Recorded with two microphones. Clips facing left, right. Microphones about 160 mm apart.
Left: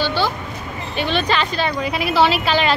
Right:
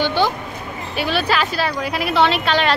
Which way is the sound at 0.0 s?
15° right (ahead or behind).